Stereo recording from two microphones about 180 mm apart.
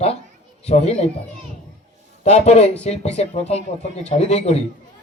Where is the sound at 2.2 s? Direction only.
40° left (ahead or behind).